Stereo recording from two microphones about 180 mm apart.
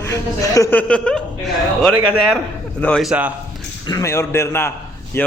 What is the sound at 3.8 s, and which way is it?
Speech, 20° left (ahead or behind).